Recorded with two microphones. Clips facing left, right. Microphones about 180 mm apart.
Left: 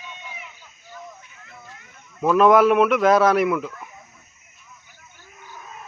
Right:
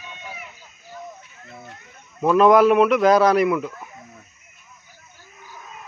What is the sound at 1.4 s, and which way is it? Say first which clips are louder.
Children playing: right 6 dB; 25° right (ahead or behind).